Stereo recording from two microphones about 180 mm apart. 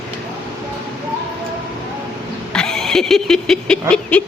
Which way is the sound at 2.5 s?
5° left (ahead or behind).